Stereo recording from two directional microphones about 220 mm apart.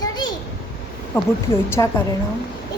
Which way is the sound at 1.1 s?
10° left (ahead or behind).